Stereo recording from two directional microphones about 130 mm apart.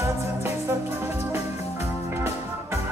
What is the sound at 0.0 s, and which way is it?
Music, 15° right (ahead or behind).